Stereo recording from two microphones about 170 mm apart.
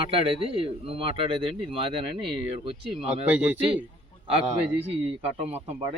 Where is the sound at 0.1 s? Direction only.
35° right (ahead or behind).